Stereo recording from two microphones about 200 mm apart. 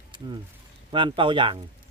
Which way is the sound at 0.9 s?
25° right (ahead or behind).